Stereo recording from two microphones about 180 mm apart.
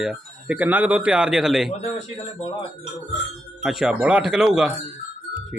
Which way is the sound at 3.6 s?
Centre (ahead or behind).